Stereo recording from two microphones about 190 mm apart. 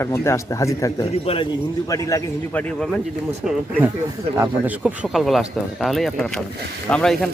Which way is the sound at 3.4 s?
5° right (ahead or behind).